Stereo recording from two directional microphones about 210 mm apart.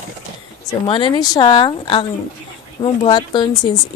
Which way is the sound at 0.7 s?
25° left (ahead or behind).